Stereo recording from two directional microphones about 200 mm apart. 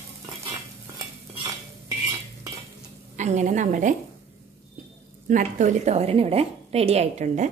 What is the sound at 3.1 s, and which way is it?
Speech, 35° right (ahead or behind).